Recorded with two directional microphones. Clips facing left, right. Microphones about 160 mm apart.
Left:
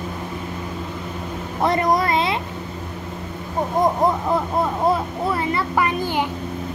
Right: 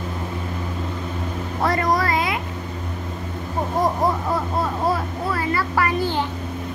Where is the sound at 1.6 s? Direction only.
25° left (ahead or behind).